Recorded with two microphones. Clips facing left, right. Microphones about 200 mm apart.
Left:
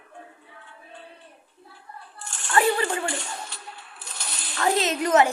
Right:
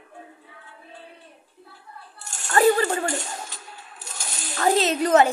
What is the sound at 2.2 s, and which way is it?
Coin, 40° right (ahead or behind).